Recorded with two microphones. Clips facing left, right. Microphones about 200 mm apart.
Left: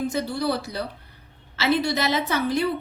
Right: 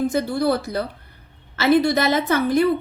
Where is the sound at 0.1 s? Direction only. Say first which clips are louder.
Right 5 dB; 50° right (ahead or behind).